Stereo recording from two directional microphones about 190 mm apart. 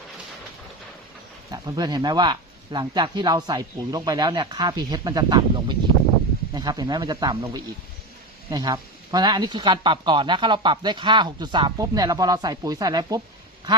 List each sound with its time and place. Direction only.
1.5 s speech: 20° right (ahead or behind)